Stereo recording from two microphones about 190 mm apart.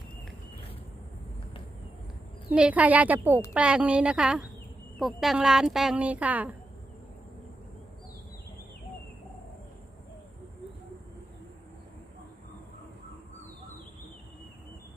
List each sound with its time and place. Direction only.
2.5 s speech: 5° right (ahead or behind)